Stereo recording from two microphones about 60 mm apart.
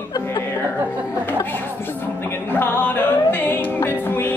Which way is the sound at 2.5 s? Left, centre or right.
Left.